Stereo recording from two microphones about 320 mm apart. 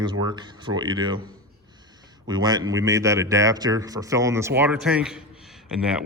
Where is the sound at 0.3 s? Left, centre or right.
Centre.